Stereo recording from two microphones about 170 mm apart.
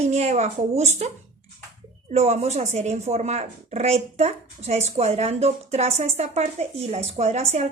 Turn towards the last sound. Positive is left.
turn(degrees=-40)  # may be behind; listen again after turning